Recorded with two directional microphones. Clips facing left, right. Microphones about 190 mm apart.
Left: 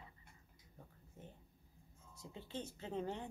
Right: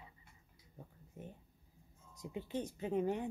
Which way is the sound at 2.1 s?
15° right (ahead or behind).